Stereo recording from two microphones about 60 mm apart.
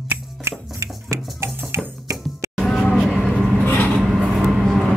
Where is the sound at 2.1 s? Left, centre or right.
Right.